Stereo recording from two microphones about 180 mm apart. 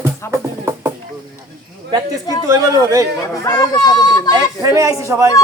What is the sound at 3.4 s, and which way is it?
Speech, 20° left (ahead or behind).